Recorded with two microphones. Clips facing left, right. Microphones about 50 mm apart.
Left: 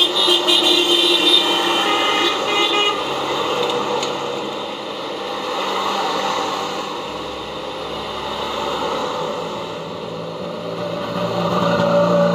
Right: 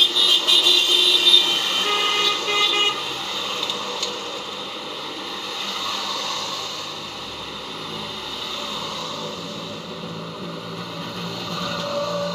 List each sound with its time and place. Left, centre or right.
0.2 s vehicle: centre
3.3 s vehicle: left
5.9 s a sound: left
11.1 s vehicle: left